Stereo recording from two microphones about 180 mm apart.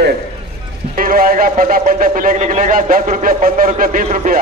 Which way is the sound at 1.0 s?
50° right (ahead or behind).